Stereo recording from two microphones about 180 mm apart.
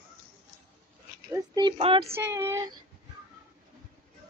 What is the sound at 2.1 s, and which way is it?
Child singing, 15° right (ahead or behind).